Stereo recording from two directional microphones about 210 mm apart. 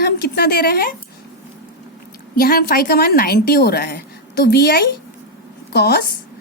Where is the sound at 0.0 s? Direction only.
50° left (ahead or behind).